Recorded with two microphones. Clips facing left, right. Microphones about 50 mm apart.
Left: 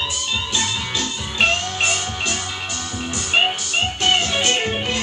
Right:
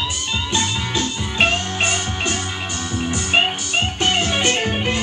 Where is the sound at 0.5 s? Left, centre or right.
Right.